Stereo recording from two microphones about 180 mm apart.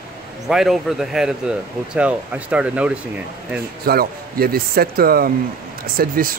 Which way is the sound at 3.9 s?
55° right (ahead or behind).